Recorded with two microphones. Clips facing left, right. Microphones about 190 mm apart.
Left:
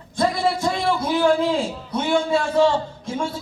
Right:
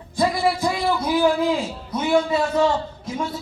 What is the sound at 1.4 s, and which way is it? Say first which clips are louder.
A man's voice: even; 30° left (ahead or behind).